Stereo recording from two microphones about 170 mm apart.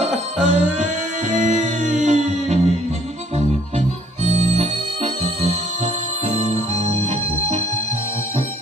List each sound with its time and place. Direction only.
0.0 s music: 40° right (ahead or behind)
4.2 s organ: 40° right (ahead or behind)
6.3 s music: 40° right (ahead or behind)